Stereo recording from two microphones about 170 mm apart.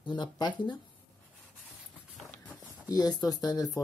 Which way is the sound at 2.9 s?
25° left (ahead or behind).